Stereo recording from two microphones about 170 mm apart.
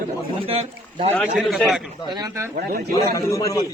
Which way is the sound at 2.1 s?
20° right (ahead or behind).